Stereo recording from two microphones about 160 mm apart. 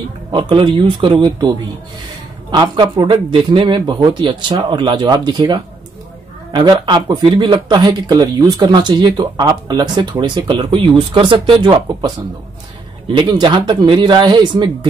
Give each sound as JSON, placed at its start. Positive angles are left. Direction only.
{"t": 0.3, "sound": "a man's voice", "side_deg": -30}
{"t": 13.1, "sound": "speech", "side_deg": -30}